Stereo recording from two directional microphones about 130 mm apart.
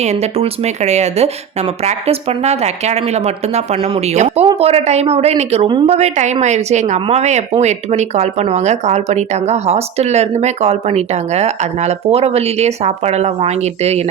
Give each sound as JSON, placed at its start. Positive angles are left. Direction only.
{"t": 0.0, "sound": "speech", "side_deg": -55}